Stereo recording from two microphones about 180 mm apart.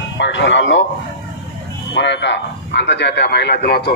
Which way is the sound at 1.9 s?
80° left.